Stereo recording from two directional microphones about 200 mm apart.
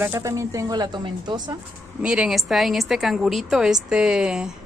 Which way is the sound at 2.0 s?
5° right (ahead or behind).